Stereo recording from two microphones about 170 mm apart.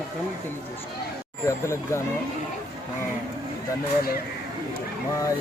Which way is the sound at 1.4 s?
15° left (ahead or behind).